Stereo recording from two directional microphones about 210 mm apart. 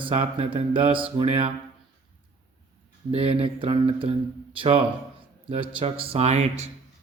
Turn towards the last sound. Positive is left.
turn(degrees=-30)  # may be behind; listen again after turning